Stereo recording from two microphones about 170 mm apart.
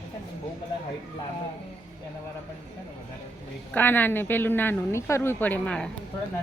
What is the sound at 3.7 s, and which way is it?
A woman's voice, 10° left (ahead or behind).